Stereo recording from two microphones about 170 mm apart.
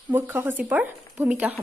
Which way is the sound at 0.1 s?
10° right (ahead or behind).